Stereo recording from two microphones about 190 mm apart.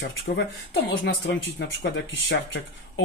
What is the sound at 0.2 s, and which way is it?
Speech, 65° left (ahead or behind).